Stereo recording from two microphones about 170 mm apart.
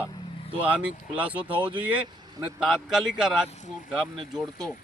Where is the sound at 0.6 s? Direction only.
10° right (ahead or behind).